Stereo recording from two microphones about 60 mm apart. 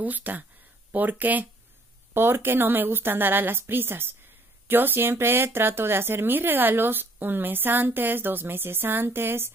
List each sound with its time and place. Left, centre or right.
0.0 s speech: right
2.1 s speech: right